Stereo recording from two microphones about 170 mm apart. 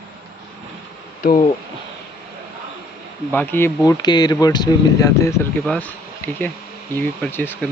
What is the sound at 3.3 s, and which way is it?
Speech, 10° left (ahead or behind).